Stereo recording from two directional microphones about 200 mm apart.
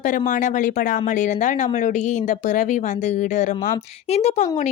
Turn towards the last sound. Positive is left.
turn(degrees=35)  # may be behind; listen again after turning